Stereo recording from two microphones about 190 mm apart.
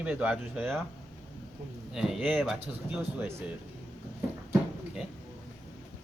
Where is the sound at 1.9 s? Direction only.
Centre (ahead or behind).